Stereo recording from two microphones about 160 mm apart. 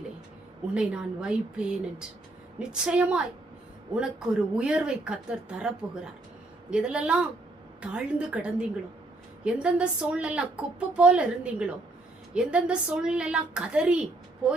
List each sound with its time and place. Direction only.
0.7 s a woman's voice: 5° right (ahead or behind)
4.5 s a woman's voice: 5° right (ahead or behind)